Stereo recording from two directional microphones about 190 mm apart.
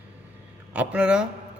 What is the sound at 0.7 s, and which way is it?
Speech, 5° right (ahead or behind).